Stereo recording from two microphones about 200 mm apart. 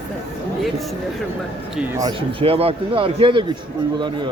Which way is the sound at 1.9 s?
20° right (ahead or behind).